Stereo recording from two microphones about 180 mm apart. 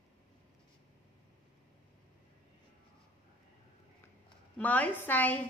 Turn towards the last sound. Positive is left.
turn(degrees=10)  # may be behind; listen again after turning